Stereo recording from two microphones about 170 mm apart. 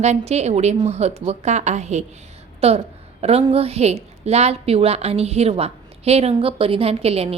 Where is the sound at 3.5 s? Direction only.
35° right (ahead or behind).